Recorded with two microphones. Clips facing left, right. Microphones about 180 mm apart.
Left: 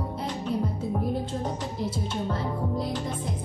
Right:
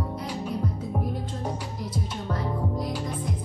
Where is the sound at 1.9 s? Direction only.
25° left (ahead or behind).